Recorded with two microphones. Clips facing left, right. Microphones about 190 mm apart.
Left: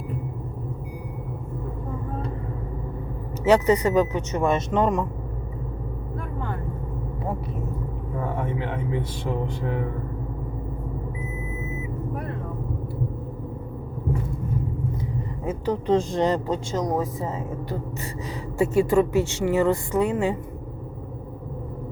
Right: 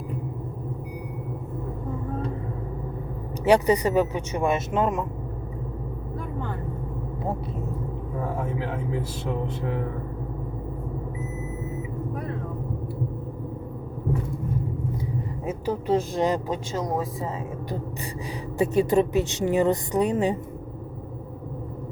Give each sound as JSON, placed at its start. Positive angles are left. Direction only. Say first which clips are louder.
{"t": 3.4, "sound": "speech", "louder": "left 1 dB", "side_deg": -15}
{"t": 8.2, "sound": "speech", "louder": "left 1 dB", "side_deg": 0}
{"t": 15.4, "sound": "speech", "louder": "left 2 dB", "side_deg": -10}
{"t": 18.5, "sound": "a woman's voice", "louder": "left 1 dB", "side_deg": -20}